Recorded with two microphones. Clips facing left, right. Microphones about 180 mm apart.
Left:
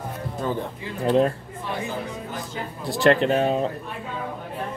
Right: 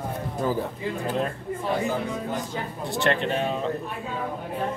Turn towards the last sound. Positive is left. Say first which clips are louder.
# left 5 dB
turn(degrees=40)  # may be behind; listen again after turning